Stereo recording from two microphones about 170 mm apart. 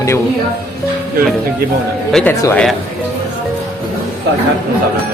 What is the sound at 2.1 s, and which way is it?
Speech, 5° left (ahead or behind).